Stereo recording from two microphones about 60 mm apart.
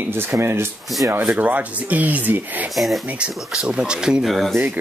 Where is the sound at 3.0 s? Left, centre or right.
Centre.